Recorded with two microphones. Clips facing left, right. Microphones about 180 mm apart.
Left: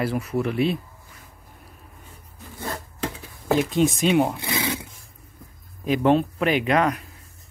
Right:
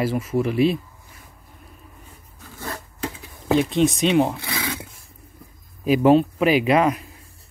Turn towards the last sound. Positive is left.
turn(degrees=-5)  # may be behind; listen again after turning